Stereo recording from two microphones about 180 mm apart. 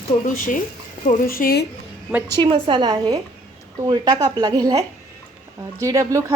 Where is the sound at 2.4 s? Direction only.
30° right (ahead or behind).